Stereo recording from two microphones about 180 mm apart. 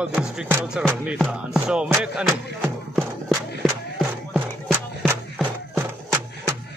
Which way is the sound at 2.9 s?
Centre (ahead or behind).